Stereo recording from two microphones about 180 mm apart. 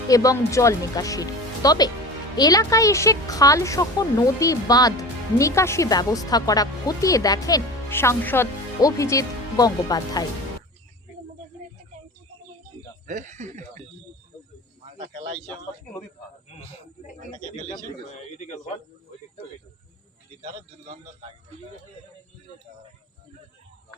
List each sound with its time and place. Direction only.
0.1 s speech: 20° left (ahead or behind)
13.1 s speech: 40° right (ahead or behind)
14.8 s snake: 40° right (ahead or behind)
18.3 s speech: 40° left (ahead or behind)
20.4 s speech: 30° right (ahead or behind)